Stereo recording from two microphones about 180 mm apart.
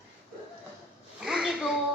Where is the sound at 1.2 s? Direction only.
5° right (ahead or behind).